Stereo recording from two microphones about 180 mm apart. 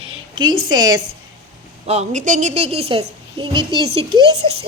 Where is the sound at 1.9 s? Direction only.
40° right (ahead or behind).